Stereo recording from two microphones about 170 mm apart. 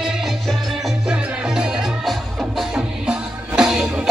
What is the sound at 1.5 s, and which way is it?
Music, 5° right (ahead or behind).